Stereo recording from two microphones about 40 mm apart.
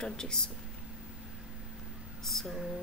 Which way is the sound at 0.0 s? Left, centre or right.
Centre.